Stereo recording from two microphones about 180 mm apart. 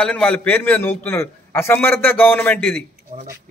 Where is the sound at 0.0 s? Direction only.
5° left (ahead or behind).